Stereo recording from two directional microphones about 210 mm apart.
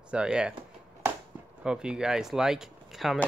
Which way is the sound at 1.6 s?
5° right (ahead or behind).